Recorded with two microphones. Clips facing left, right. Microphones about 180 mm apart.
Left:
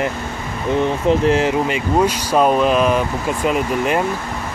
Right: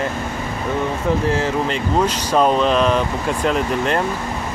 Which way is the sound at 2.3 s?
10° left (ahead or behind).